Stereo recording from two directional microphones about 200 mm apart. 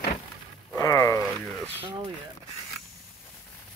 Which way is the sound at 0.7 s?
15° left (ahead or behind).